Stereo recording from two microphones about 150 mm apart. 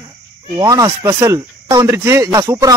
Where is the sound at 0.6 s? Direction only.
25° right (ahead or behind).